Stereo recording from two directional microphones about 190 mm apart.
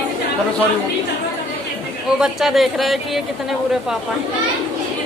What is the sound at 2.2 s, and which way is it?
Speech, centre (ahead or behind).